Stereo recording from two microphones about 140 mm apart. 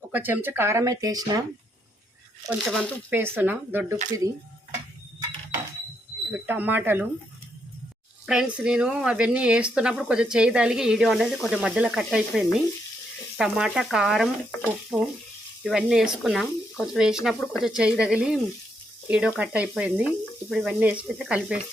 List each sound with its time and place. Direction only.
0.1 s speech: 15° right (ahead or behind)
2.6 s speech: 5° left (ahead or behind)
3.1 s speech: 15° right (ahead or behind)
6.3 s speech: 10° right (ahead or behind)
8.3 s speech: 5° right (ahead or behind)
14.6 s water tap: 5° right (ahead or behind)
15.6 s speech: 5° right (ahead or behind)